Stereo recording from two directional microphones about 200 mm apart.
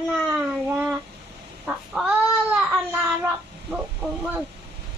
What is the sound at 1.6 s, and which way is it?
Chicken, 5° right (ahead or behind).